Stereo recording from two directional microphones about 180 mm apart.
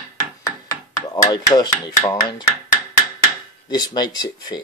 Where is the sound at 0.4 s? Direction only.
20° left (ahead or behind).